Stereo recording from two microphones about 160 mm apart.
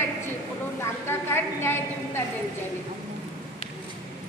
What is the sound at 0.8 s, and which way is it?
A woman's voice, 15° left (ahead or behind).